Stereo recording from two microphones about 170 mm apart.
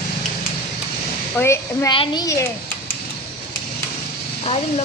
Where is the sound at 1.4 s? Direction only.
15° left (ahead or behind).